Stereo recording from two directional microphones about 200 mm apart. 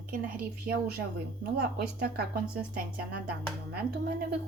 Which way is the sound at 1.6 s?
55° right (ahead or behind).